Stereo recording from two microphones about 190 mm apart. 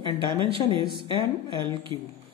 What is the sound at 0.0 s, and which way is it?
A woman's voice, 25° right (ahead or behind).